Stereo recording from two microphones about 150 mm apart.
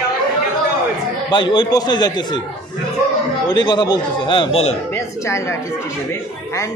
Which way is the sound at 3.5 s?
30° left (ahead or behind).